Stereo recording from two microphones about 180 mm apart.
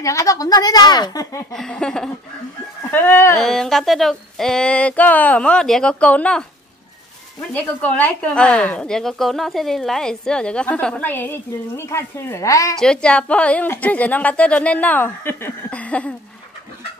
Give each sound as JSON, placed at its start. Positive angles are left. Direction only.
{"t": 0.0, "sound": "a woman's voice", "side_deg": 15}
{"t": 1.5, "sound": "a woman's voice", "side_deg": 5}
{"t": 3.3, "sound": "speech", "side_deg": 0}
{"t": 7.5, "sound": "speech", "side_deg": 10}
{"t": 12.7, "sound": "a woman's voice", "side_deg": 5}